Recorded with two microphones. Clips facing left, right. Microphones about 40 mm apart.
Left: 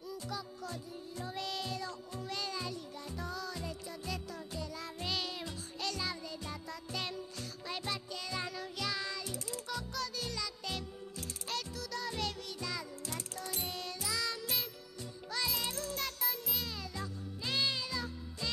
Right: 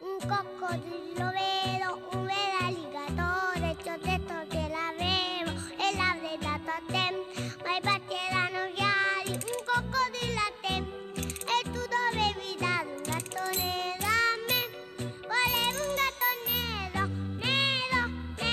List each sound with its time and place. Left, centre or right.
0.1 s music: right